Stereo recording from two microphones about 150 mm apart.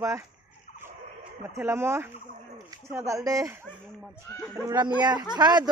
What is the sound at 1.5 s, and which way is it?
Speech, 15° right (ahead or behind).